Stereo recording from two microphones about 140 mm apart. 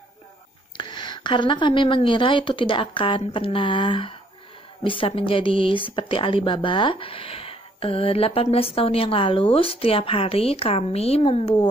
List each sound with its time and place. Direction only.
0.7 s a woman's voice: 35° left (ahead or behind)